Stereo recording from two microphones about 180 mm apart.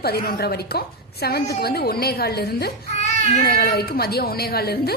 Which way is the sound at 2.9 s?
40° left (ahead or behind).